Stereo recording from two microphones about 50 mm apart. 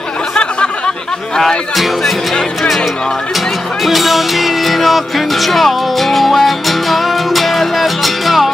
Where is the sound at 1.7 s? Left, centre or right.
Centre.